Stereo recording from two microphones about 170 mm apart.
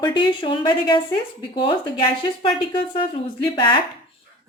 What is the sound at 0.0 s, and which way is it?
Speech, 25° left (ahead or behind).